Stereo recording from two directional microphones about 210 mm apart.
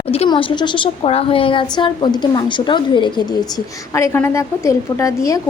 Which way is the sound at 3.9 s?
10° left (ahead or behind).